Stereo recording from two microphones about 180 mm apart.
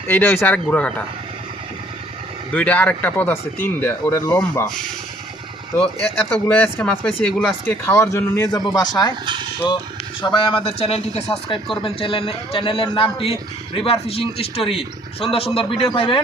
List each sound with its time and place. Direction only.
0.1 s speech: 10° left (ahead or behind)
2.5 s speech: 10° left (ahead or behind)
6.0 s speech: 5° left (ahead or behind)
10.3 s speech: 30° left (ahead or behind)